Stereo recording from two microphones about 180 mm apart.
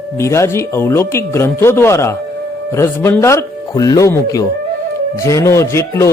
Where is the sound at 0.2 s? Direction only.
15° left (ahead or behind).